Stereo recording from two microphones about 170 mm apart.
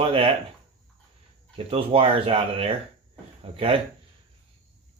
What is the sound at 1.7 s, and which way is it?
Speech, 35° right (ahead or behind).